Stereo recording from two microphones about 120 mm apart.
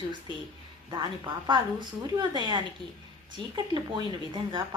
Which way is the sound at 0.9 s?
40° right (ahead or behind).